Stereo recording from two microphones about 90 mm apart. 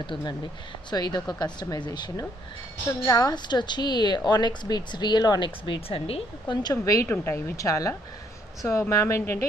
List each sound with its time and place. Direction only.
0.0 s speech: 65° left (ahead or behind)
0.8 s speech: 55° left (ahead or behind)
5.7 s speech: 90° left
6.7 s speech: 35° left (ahead or behind)
7.1 s speech: 25° left (ahead or behind)